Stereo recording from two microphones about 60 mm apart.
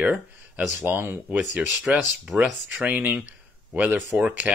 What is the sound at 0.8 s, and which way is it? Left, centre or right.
Speech, right.